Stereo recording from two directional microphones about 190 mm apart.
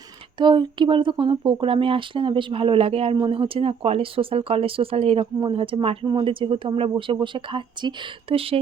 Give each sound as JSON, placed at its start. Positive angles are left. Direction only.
{"t": 0.3, "sound": "speech", "side_deg": -25}